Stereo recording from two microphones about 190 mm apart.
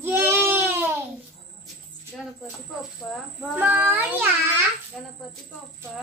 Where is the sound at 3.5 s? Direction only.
10° right (ahead or behind).